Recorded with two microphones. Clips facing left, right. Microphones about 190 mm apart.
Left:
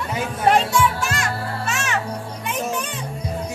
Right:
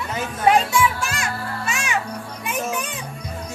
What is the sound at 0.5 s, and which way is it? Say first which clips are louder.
Children playing: even; 10° right (ahead or behind).